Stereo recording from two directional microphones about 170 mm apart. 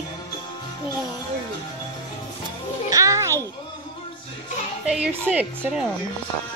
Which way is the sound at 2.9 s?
20° right (ahead or behind).